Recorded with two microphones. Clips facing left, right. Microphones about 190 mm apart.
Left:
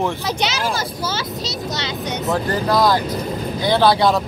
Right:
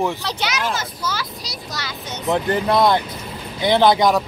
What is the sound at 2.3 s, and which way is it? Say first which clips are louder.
Speech: right 1 dB; 25° right (ahead or behind).